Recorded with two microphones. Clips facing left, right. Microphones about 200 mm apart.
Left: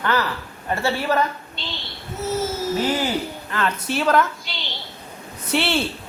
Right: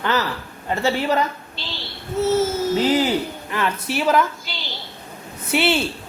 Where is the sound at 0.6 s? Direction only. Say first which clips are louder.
Right 2 dB; 20° right (ahead or behind).